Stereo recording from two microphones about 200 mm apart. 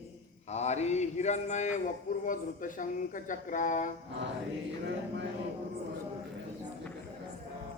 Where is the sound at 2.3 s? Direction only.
40° left (ahead or behind).